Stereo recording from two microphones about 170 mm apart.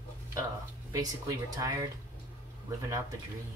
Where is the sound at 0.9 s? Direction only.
20° right (ahead or behind).